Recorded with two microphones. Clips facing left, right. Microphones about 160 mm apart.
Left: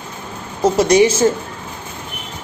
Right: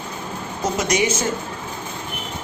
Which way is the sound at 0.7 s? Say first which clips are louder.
Left 9 dB; 30° left (ahead or behind).